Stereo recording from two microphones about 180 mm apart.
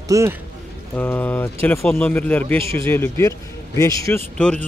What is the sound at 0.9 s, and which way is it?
A man's voice, 10° left (ahead or behind).